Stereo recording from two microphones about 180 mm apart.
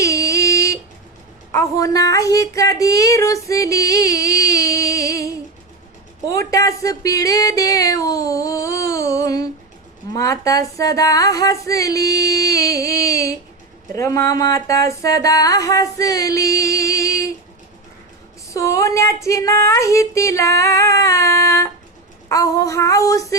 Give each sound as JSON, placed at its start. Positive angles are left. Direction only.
{"t": 0.0, "sound": "a sound", "side_deg": 15}
{"t": 1.5, "sound": "speech", "side_deg": 20}
{"t": 6.2, "sound": "music", "side_deg": 15}
{"t": 18.4, "sound": "music", "side_deg": 15}